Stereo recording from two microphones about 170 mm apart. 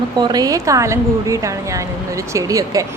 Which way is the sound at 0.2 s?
25° right (ahead or behind).